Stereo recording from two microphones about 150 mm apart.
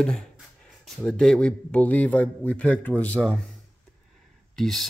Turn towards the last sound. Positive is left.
turn(degrees=0)  # may be behind; listen again after turning